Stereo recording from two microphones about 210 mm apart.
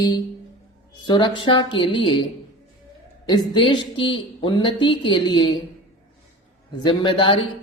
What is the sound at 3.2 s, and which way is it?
Speech, 20° left (ahead or behind).